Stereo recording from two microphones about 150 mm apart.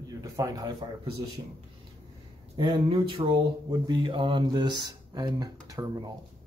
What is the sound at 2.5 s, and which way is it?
Speech, 30° right (ahead or behind).